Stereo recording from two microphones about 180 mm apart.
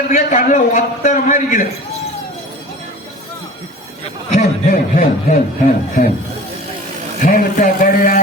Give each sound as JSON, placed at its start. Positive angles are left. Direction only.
{"t": 0.1, "sound": "speech", "side_deg": 45}
{"t": 4.3, "sound": "speech", "side_deg": 40}
{"t": 7.2, "sound": "speech", "side_deg": 50}